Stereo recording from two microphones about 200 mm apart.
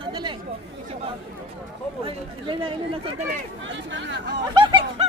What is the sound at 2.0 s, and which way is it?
Speech, 25° right (ahead or behind).